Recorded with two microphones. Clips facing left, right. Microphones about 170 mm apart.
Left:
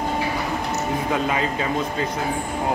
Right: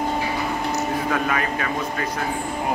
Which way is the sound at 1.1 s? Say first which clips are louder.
Left 1 dB; 20° left (ahead or behind).